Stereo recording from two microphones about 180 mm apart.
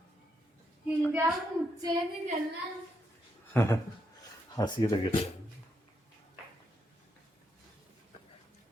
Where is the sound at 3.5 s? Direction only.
15° left (ahead or behind).